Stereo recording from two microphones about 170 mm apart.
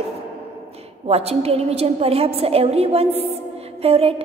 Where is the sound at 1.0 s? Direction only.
35° right (ahead or behind).